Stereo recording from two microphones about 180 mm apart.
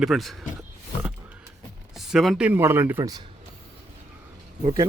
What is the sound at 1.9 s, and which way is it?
Speech, centre (ahead or behind).